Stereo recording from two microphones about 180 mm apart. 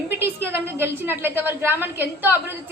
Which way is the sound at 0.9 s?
10° right (ahead or behind).